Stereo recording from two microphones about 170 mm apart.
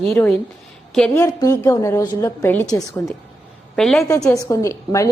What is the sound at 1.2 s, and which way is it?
A woman's voice, 15° left (ahead or behind).